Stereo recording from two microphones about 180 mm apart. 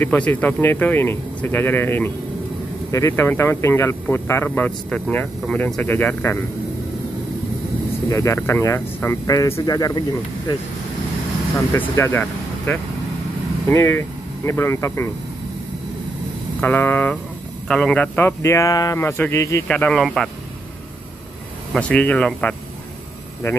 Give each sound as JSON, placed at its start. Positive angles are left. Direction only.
{"t": 0.0, "sound": "speech", "side_deg": 10}
{"t": 8.1, "sound": "speech", "side_deg": 15}
{"t": 11.7, "sound": "speech", "side_deg": 15}
{"t": 16.6, "sound": "speech", "side_deg": 10}
{"t": 19.7, "sound": "speech", "side_deg": 5}
{"t": 21.7, "sound": "speech", "side_deg": 5}